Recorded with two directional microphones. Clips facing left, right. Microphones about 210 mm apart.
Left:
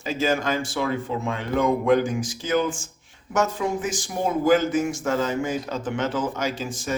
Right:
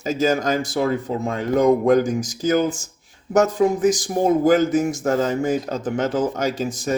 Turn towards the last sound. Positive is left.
turn(degrees=-40)  # may be behind; listen again after turning